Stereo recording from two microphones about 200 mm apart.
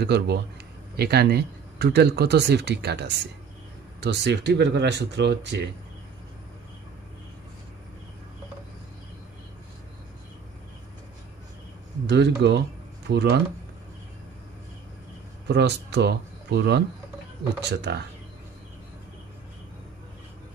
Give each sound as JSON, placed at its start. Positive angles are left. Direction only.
{"t": 0.0, "sound": "speech", "side_deg": -55}
{"t": 12.1, "sound": "speech", "side_deg": -60}
{"t": 15.4, "sound": "speech", "side_deg": -60}